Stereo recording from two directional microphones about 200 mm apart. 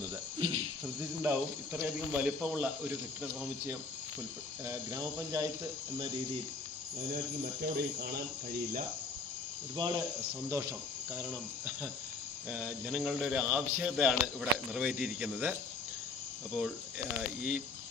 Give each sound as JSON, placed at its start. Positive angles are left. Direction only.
{"t": 0.3, "sound": "cricket", "side_deg": -30}
{"t": 1.2, "sound": "speech", "side_deg": -10}
{"t": 4.6, "sound": "speech", "side_deg": -15}
{"t": 7.6, "sound": "speech", "side_deg": -50}
{"t": 9.7, "sound": "speech", "side_deg": -20}
{"t": 16.6, "sound": "speech", "side_deg": -5}